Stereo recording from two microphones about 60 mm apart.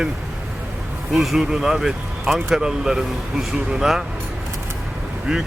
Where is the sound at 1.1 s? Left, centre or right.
Centre.